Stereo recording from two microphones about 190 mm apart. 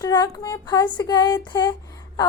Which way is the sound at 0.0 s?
20° left (ahead or behind).